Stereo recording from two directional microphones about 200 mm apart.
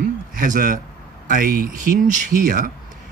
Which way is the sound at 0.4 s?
40° right (ahead or behind).